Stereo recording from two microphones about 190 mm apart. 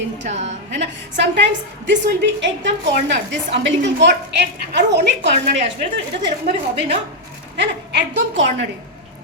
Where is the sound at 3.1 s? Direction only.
70° right (ahead or behind).